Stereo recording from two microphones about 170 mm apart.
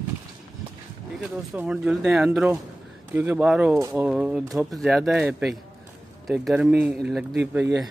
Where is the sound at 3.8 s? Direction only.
20° right (ahead or behind).